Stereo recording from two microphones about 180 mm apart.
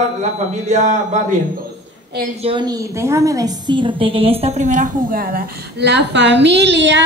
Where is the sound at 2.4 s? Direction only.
25° right (ahead or behind).